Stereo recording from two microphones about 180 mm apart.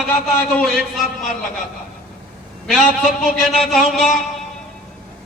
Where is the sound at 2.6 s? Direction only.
Centre (ahead or behind).